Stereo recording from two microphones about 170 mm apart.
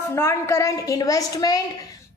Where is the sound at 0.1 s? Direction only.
15° left (ahead or behind).